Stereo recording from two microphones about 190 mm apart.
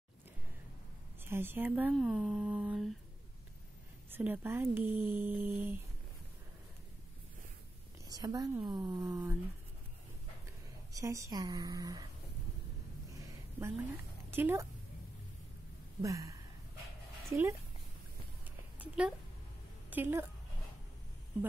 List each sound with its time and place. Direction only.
1.2 s speech: 10° right (ahead or behind)
4.1 s speech: 10° right (ahead or behind)
8.1 s a woman's voice: 20° right (ahead or behind)
10.9 s a woman's voice: 15° right (ahead or behind)
13.1 s a sound: 15° right (ahead or behind)
14.3 s a woman's voice: 10° right (ahead or behind)
16.0 s speech: 15° right (ahead or behind)
18.8 s a woman's voice: 5° right (ahead or behind)